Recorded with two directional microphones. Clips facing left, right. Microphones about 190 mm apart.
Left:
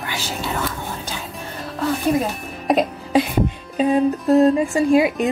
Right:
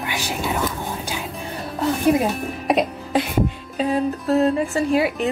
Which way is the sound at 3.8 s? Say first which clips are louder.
Left 4 dB; 20° left (ahead or behind).